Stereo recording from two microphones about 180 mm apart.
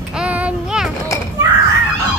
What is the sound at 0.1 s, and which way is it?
Child singing, 5° right (ahead or behind).